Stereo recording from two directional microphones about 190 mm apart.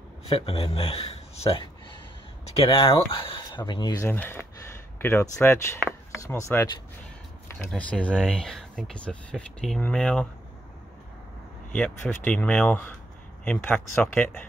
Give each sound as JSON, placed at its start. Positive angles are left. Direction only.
{"t": 0.2, "sound": "speech", "side_deg": 30}
{"t": 11.7, "sound": "speech", "side_deg": 10}